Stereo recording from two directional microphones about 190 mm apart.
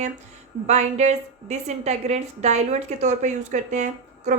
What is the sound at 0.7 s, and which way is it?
A woman's voice, 35° right (ahead or behind).